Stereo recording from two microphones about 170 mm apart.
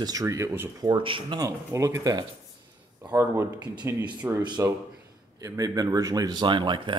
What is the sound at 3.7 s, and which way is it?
Speech, 25° right (ahead or behind).